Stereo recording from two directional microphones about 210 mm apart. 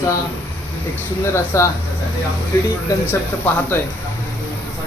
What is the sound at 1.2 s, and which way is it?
Speech, 15° left (ahead or behind).